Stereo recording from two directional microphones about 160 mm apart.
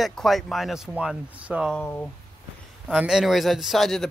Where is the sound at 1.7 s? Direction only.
10° left (ahead or behind).